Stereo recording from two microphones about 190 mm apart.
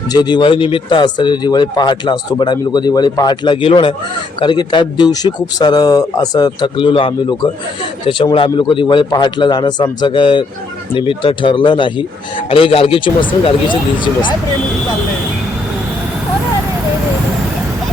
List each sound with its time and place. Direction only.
0.1 s speech: 20° left (ahead or behind)